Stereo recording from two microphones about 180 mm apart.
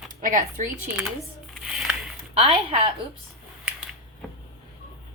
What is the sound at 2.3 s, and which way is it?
Speech, 35° right (ahead or behind).